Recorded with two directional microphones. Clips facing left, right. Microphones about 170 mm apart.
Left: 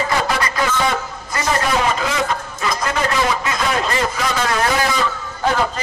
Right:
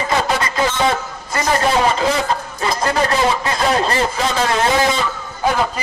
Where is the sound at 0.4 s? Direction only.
25° right (ahead or behind).